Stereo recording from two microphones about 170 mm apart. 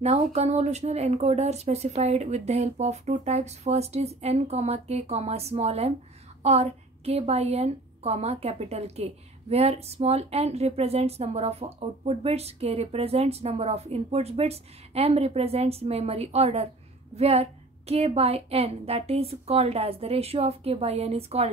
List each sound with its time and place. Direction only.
0.0 s a woman's voice: 40° right (ahead or behind)